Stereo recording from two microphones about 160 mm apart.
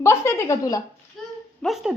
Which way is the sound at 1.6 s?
Centre (ahead or behind).